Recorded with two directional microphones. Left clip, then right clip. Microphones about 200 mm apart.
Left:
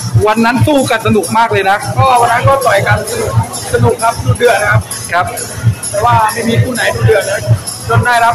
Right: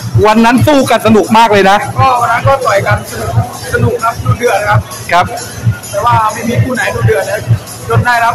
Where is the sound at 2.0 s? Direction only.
5° left (ahead or behind).